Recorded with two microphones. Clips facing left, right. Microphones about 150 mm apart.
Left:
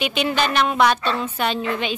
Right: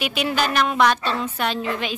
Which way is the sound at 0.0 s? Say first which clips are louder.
Left 2 dB; 5° right (ahead or behind).